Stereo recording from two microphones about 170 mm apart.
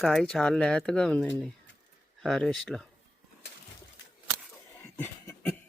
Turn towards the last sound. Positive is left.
turn(degrees=10)  # may be behind; listen again after turning